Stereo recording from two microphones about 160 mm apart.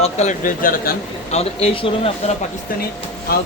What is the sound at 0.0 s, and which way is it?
Speech, 45° left (ahead or behind).